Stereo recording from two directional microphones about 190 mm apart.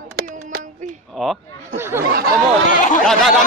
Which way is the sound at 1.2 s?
Centre (ahead or behind).